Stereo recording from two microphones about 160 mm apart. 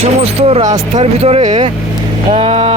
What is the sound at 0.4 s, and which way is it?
Speech, 40° right (ahead or behind).